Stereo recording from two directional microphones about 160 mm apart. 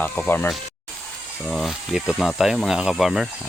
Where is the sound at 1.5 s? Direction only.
Centre (ahead or behind).